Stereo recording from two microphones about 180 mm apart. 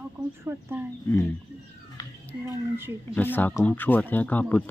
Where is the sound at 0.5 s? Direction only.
10° right (ahead or behind).